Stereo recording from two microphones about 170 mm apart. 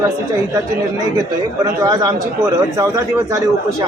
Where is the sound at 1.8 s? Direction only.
20° right (ahead or behind).